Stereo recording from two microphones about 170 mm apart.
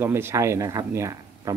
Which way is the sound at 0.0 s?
15° right (ahead or behind).